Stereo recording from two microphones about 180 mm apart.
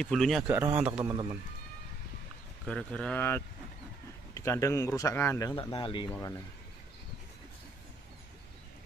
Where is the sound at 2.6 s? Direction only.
5° left (ahead or behind).